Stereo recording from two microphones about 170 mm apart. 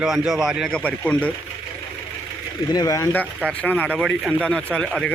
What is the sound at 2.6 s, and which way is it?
Speech, 20° left (ahead or behind).